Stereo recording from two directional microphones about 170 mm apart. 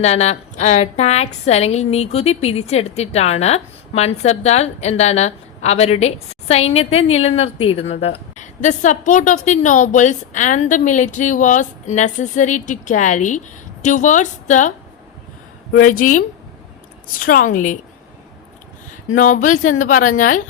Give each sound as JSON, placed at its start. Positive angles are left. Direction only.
{"t": 0.0, "sound": "a woman's voice", "side_deg": 40}
{"t": 15.8, "sound": "speech", "side_deg": 50}
{"t": 19.1, "sound": "speech", "side_deg": 50}